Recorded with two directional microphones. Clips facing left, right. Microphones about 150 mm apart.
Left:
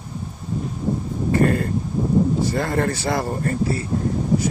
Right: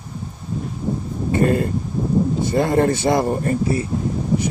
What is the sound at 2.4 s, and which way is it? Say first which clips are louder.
Speech: right 4 dB; 20° right (ahead or behind).